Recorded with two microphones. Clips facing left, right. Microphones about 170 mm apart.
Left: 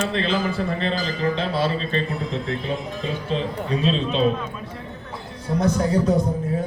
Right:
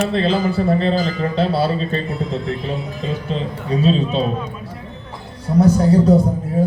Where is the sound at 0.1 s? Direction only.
35° right (ahead or behind).